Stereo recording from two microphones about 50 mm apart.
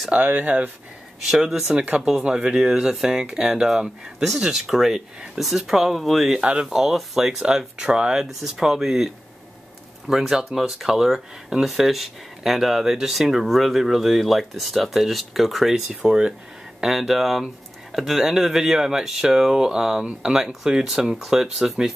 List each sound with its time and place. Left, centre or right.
0.2 s speech: right
1.3 s speech: centre
6.4 s speech: right
6.7 s speech: centre
15.7 s speech: centre
16.8 s speech: centre